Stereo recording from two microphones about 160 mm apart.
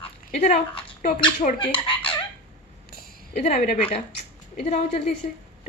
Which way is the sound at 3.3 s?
45° left (ahead or behind).